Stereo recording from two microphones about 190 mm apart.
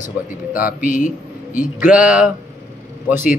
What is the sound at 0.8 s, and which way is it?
Speech, 45° left (ahead or behind).